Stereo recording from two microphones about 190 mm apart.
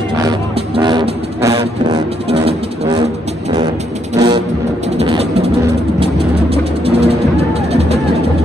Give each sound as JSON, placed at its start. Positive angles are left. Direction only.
{"t": 0.2, "sound": "vehicle", "side_deg": -25}
{"t": 3.5, "sound": "music", "side_deg": -20}
{"t": 4.9, "sound": "a sound", "side_deg": -30}
{"t": 6.5, "sound": "music", "side_deg": -30}